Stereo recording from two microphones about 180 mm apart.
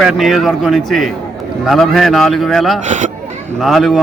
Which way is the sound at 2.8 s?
45° right (ahead or behind).